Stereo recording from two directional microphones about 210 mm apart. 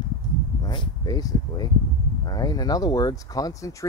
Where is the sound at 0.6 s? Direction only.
20° left (ahead or behind).